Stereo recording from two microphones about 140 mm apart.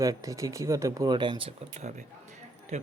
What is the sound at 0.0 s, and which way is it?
Speech, 25° right (ahead or behind).